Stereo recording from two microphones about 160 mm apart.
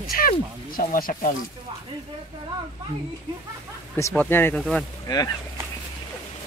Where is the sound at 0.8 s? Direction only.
60° left (ahead or behind).